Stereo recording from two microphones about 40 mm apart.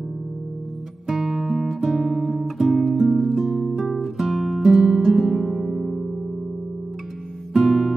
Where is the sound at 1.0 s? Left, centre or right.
Centre.